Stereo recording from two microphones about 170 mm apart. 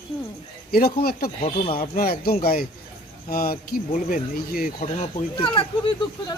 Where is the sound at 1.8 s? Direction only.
60° left (ahead or behind).